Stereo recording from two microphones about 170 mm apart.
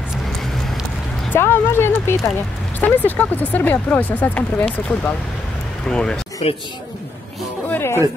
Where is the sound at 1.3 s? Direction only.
15° left (ahead or behind).